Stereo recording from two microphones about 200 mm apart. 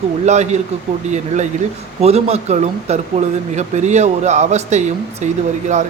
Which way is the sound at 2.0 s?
30° right (ahead or behind).